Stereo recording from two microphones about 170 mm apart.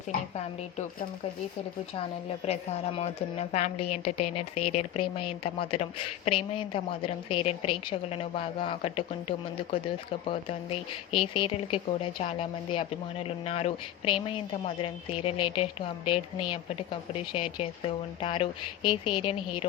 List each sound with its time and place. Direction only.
2.0 s a woman's voice: 40° left (ahead or behind)